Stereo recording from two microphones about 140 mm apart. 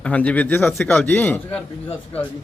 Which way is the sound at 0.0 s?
10° left (ahead or behind).